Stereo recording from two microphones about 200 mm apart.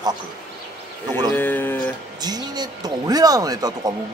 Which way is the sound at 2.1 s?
20° right (ahead or behind).